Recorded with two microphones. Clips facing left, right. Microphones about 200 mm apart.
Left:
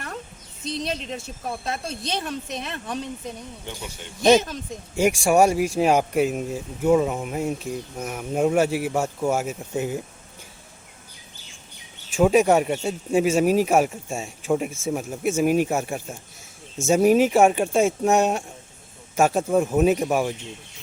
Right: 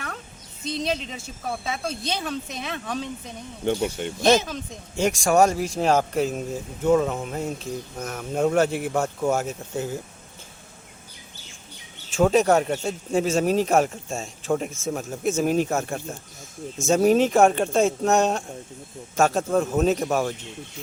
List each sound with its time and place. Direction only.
0.6 s speech: centre (ahead or behind)
3.7 s speech: 55° right (ahead or behind)
4.2 s speech: centre (ahead or behind)
4.9 s speech: 10° left (ahead or behind)
12.1 s speech: 10° left (ahead or behind)